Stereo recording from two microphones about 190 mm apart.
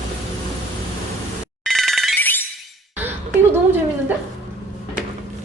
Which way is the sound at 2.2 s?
10° left (ahead or behind).